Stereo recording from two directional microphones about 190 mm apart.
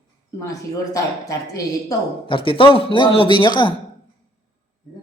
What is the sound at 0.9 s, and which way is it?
A woman's voice, 15° left (ahead or behind).